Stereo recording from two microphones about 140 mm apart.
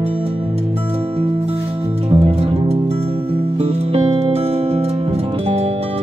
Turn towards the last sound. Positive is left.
turn(degrees=-45)  # may be behind; listen again after turning